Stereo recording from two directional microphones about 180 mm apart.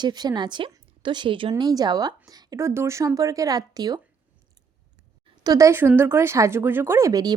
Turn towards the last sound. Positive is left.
turn(degrees=-20)  # may be behind; listen again after turning